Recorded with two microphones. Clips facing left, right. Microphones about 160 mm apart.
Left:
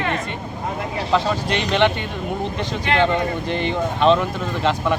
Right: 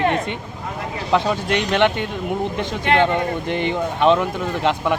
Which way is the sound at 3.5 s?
15° right (ahead or behind).